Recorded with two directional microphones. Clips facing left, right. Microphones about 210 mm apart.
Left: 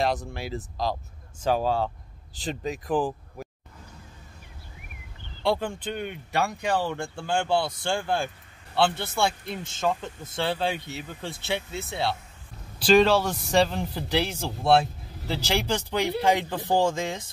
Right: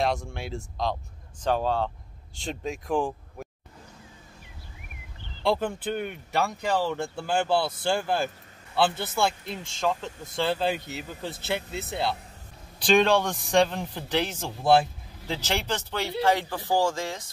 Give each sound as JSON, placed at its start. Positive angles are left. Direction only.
{"t": 0.0, "sound": "a man's voice", "side_deg": 0}
{"t": 5.4, "sound": "a man's voice", "side_deg": -5}